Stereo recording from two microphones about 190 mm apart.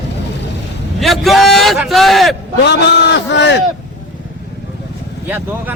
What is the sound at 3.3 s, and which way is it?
Speech, 65° left (ahead or behind).